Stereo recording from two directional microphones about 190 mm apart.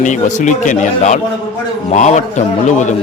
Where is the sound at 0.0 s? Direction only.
40° left (ahead or behind).